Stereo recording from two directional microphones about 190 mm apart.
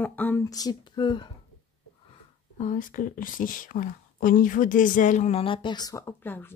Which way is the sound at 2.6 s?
45° left (ahead or behind).